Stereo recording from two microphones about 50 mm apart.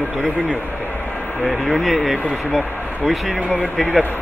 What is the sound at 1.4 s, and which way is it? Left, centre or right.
Speech, centre.